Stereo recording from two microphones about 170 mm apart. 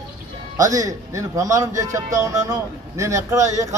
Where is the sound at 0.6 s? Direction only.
20° right (ahead or behind).